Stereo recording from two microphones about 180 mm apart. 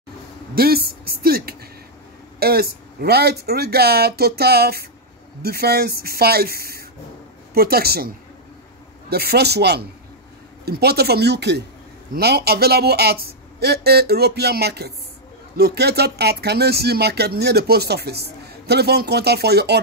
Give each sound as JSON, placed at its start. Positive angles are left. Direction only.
{"t": 0.6, "sound": "speech", "side_deg": -60}
{"t": 9.1, "sound": "speech", "side_deg": -60}